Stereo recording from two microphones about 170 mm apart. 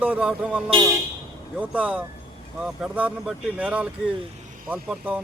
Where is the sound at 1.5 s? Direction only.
5° right (ahead or behind).